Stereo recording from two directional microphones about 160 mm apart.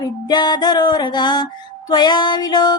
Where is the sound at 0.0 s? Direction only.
25° left (ahead or behind).